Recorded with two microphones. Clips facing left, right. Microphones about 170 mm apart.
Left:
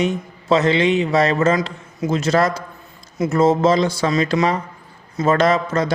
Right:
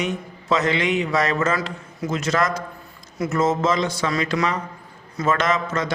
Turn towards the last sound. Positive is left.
turn(degrees=35)  # may be behind; listen again after turning